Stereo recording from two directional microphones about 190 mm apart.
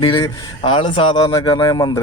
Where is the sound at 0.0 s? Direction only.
25° left (ahead or behind).